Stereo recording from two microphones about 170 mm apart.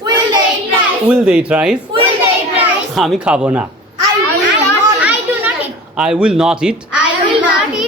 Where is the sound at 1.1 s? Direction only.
5° right (ahead or behind).